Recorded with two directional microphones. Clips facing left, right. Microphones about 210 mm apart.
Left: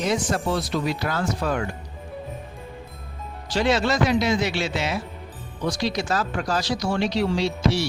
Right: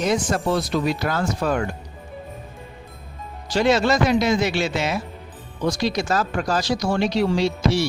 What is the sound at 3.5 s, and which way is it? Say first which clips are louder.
Speech: right 3 dB; 45° right (ahead or behind).